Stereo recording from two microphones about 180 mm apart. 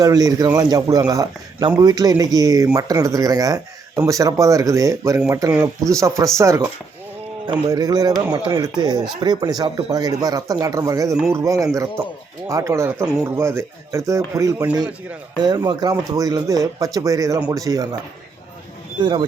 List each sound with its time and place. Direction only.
0.0 s a man's voice: 20° right (ahead or behind)